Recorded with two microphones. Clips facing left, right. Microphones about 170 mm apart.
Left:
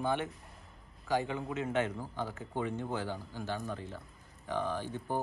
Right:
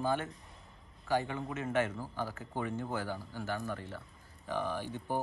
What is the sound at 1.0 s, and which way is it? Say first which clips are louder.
Speech: even; 10° left (ahead or behind).